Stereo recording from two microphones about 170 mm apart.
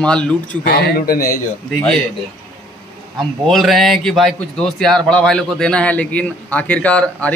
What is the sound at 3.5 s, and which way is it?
A man's voice, centre (ahead or behind).